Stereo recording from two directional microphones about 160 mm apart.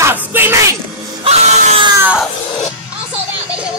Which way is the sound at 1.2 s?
45° right (ahead or behind).